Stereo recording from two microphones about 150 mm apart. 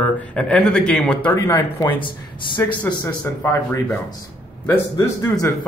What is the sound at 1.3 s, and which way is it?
Speech, 25° left (ahead or behind).